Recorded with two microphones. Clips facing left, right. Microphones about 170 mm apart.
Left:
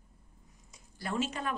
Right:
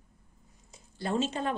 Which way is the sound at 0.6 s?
25° right (ahead or behind).